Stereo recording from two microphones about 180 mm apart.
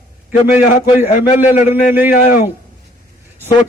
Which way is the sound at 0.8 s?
55° left (ahead or behind).